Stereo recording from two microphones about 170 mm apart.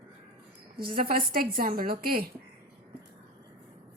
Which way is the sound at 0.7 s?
60° right (ahead or behind).